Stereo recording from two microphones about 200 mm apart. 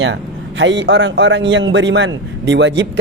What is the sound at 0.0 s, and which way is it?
A man's voice, 65° right (ahead or behind).